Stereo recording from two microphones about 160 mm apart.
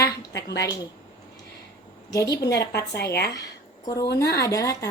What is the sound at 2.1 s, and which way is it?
Speech, 25° left (ahead or behind).